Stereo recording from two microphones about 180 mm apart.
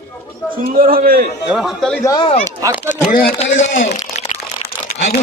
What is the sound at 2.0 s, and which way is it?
Speech, 20° left (ahead or behind).